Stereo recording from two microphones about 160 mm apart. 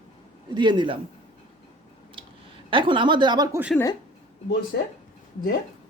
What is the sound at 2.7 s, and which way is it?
Speech, 30° right (ahead or behind).